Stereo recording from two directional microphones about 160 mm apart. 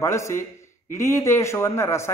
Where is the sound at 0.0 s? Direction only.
15° left (ahead or behind).